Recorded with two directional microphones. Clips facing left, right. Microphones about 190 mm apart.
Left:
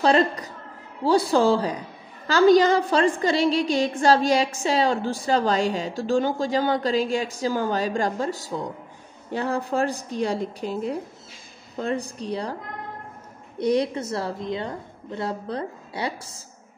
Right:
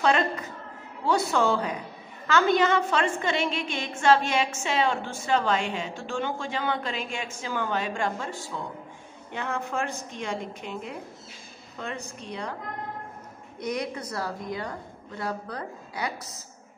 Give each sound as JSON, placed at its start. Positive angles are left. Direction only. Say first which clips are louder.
{"t": 0.0, "sound": "a woman's voice", "louder": "left 4 dB", "side_deg": 35}
{"t": 13.6, "sound": "a woman's voice", "louder": "left 8 dB", "side_deg": 30}